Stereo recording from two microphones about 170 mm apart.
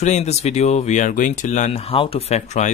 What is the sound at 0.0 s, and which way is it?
Speech, 40° left (ahead or behind).